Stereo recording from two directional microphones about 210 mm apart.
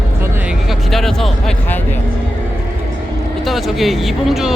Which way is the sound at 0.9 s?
Centre (ahead or behind).